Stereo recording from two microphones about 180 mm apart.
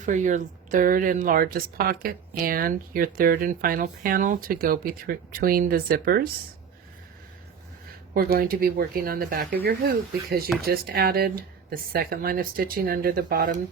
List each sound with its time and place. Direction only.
0.0 s speech: 45° right (ahead or behind)
8.1 s speech: 55° right (ahead or behind)